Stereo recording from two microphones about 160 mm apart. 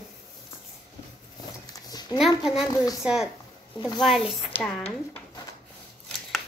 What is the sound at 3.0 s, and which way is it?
A child's voice, 5° right (ahead or behind).